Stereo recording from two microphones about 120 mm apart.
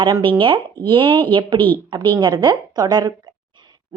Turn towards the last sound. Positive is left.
turn(degrees=-35)  # may be behind; listen again after turning